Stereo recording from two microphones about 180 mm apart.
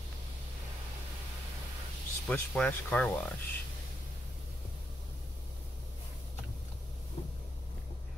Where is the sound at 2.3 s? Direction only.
5° left (ahead or behind).